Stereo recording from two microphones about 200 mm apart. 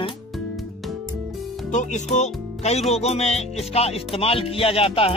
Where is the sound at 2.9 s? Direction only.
30° left (ahead or behind).